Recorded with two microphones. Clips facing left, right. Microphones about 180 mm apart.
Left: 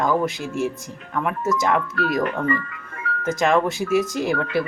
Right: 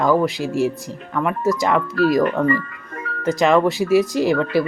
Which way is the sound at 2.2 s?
35° right (ahead or behind).